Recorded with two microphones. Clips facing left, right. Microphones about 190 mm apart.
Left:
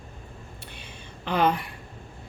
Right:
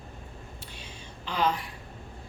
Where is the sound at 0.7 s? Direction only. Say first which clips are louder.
Left 1 dB; 60° left (ahead or behind).